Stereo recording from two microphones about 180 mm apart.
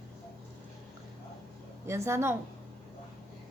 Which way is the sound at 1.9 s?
15° right (ahead or behind).